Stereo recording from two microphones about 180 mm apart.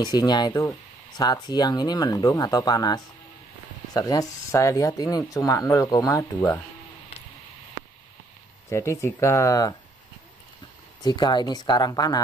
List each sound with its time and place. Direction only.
0.0 s speech: 25° left (ahead or behind)
8.6 s speech: 15° left (ahead or behind)
11.0 s speech: 20° left (ahead or behind)